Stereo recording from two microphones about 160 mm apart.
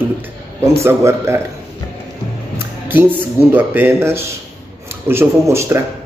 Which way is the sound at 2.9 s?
10° right (ahead or behind).